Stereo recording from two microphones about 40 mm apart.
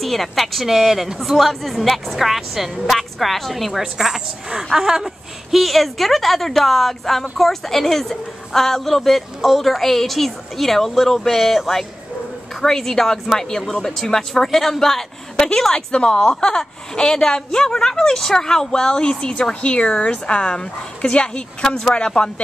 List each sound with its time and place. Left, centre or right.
0.0 s a woman's voice: centre
12.6 s a woman's voice: centre; by 21.6 s left
21.6 s a woman's voice: centre
21.9 s speech: left